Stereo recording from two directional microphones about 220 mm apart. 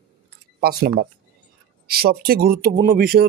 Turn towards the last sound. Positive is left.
turn(degrees=-40)  # may be behind; listen again after turning